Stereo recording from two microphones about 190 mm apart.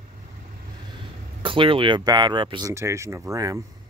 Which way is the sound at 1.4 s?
25° right (ahead or behind).